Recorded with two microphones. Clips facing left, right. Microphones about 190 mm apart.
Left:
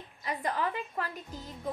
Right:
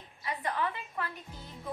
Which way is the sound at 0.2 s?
40° left (ahead or behind).